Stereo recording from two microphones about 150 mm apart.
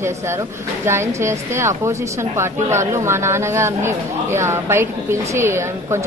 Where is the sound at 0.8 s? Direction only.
15° right (ahead or behind).